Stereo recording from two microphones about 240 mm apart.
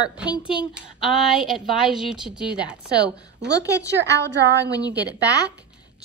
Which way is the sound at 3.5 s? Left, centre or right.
Centre.